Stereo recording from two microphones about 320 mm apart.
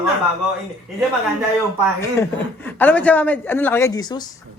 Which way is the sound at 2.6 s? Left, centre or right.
Centre.